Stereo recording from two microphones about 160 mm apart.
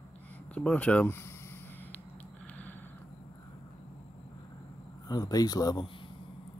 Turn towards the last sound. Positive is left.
turn(degrees=25)  # may be behind; listen again after turning